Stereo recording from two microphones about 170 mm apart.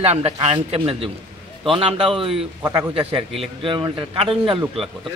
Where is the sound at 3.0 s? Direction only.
35° right (ahead or behind).